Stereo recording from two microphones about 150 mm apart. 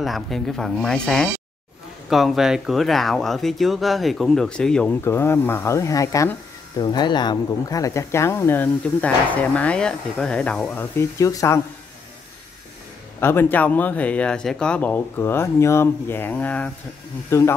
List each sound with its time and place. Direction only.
0.0 s speech: centre (ahead or behind); by 11.6 s 20° left (ahead or behind)
13.2 s speech: 15° left (ahead or behind)